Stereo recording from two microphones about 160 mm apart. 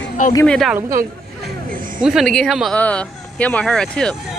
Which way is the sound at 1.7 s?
55° right (ahead or behind).